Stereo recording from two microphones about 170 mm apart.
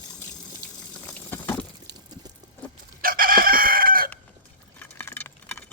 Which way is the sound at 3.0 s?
55° right (ahead or behind).